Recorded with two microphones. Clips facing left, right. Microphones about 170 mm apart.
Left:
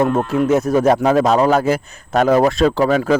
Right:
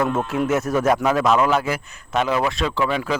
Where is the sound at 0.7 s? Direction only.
30° left (ahead or behind).